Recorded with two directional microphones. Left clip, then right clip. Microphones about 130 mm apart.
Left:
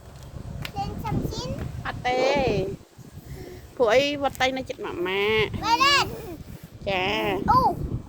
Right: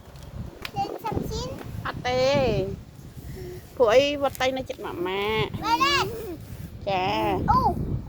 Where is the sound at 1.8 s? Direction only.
20° left (ahead or behind).